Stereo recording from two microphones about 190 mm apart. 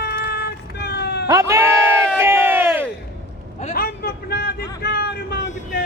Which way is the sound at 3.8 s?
50° left (ahead or behind).